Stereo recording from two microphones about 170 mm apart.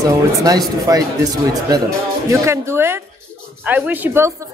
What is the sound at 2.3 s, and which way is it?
A woman's voice, 15° right (ahead or behind).